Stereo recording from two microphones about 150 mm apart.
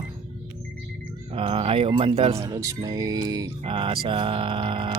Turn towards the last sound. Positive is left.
turn(degrees=-35)  # may be behind; listen again after turning